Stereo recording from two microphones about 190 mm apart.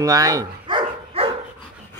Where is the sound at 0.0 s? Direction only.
20° right (ahead or behind).